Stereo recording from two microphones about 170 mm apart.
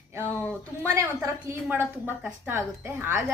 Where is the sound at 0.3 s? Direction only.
10° left (ahead or behind).